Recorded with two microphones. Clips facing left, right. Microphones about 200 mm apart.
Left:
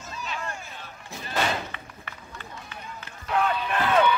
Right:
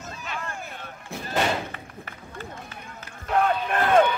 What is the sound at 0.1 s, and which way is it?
Slam, 55° right (ahead or behind).